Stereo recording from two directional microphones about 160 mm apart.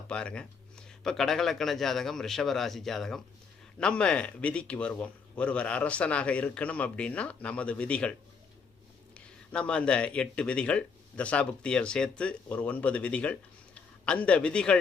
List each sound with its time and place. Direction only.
0.1 s a man's voice: 5° left (ahead or behind)
9.1 s a man's voice: 5° left (ahead or behind)